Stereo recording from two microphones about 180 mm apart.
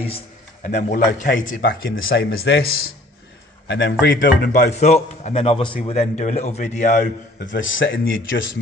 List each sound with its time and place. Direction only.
0.0 s a man's voice: 35° left (ahead or behind)
2.0 s speech: 60° left (ahead or behind)
3.6 s a man's voice: 70° left (ahead or behind)
4.0 s a man's voice: 50° left (ahead or behind)
7.6 s speech: 90° left